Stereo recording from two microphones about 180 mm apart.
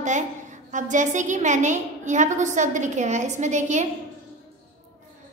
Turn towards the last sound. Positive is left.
turn(degrees=-40)  # may be behind; listen again after turning